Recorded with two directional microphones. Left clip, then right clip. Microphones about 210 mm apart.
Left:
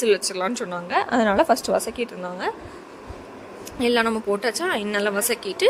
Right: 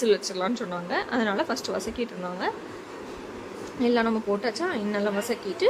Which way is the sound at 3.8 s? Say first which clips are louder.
Left 4 dB; 40° left (ahead or behind).